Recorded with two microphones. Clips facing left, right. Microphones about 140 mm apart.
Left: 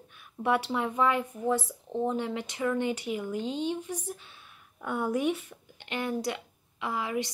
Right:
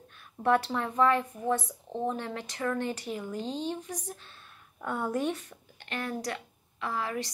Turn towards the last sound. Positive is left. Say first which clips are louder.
# left 1 dB
turn(degrees=15)  # may be behind; listen again after turning